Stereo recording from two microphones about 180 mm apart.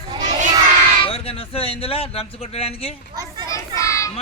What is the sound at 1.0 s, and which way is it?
Speech, 30° left (ahead or behind).